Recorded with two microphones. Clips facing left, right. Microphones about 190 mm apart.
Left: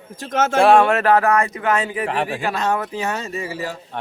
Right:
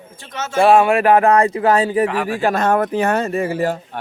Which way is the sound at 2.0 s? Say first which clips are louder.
Right 3 dB; 30° left (ahead or behind).